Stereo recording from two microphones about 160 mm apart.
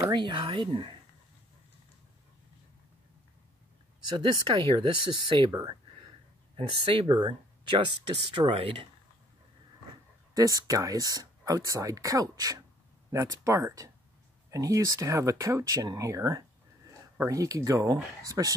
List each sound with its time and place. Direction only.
0.1 s speech: 30° right (ahead or behind)
4.1 s speech: 30° right (ahead or behind)
10.3 s speech: 20° right (ahead or behind)